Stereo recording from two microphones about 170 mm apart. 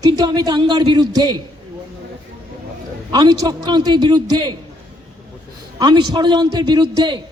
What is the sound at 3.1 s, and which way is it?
A man's voice, 25° right (ahead or behind).